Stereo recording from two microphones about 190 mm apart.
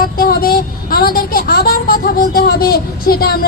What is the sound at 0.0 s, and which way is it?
A woman's voice, 50° left (ahead or behind).